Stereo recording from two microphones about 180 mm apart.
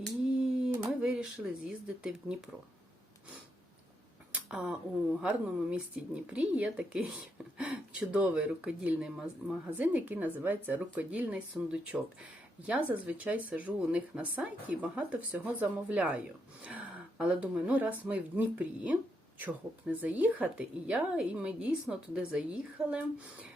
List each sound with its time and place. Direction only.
0.0 s a sound: 5° right (ahead or behind)
1.0 s speech: 5° right (ahead or behind)
4.3 s tick-tock: 5° right (ahead or behind)
5.2 s speech: 5° right (ahead or behind)